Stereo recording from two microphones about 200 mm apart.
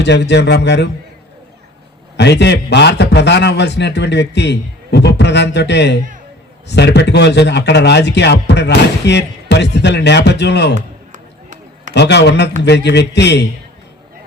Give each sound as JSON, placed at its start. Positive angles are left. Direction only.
{"t": 0.0, "sound": "speech", "side_deg": 60}
{"t": 2.1, "sound": "speech", "side_deg": 60}
{"t": 11.9, "sound": "speech", "side_deg": 60}